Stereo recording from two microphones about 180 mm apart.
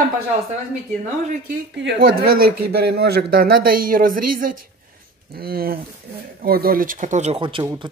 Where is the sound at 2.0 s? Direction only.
55° right (ahead or behind).